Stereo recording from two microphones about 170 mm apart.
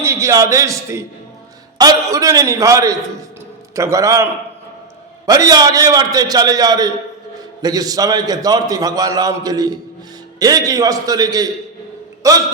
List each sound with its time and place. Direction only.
0.0 s a man's voice: 15° right (ahead or behind)